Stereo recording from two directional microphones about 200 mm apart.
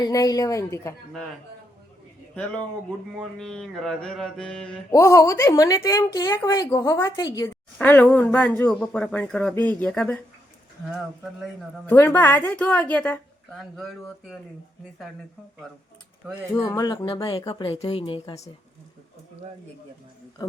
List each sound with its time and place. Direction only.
0.0 s a woman's voice: 20° left (ahead or behind)
3.2 s mantra: centre (ahead or behind)
4.9 s a woman's voice: 15° left (ahead or behind)
10.8 s mantra: 5° right (ahead or behind)
11.9 s a woman's voice: 10° left (ahead or behind)
16.6 s speech: 20° left (ahead or behind)